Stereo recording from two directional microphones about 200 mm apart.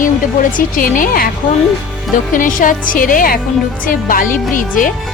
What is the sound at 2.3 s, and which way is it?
Speech, 40° left (ahead or behind).